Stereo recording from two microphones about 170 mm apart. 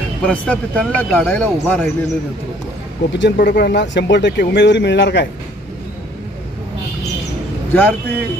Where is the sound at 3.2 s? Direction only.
75° left (ahead or behind).